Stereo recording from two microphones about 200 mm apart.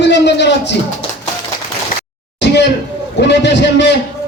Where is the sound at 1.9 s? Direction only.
45° left (ahead or behind).